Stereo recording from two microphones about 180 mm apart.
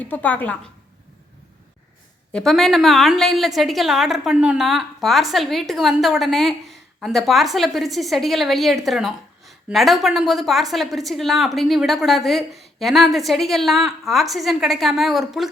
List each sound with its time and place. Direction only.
0.0 s a woman's voice: 10° left (ahead or behind)
2.3 s a woman's voice: centre (ahead or behind)